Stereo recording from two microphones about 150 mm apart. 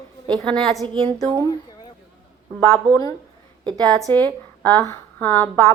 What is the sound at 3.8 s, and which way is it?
Speech, 5° left (ahead or behind).